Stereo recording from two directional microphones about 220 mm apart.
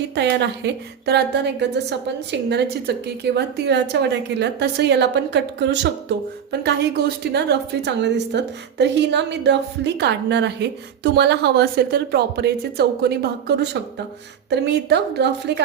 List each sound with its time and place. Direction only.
0.1 s a woman's voice: 50° right (ahead or behind)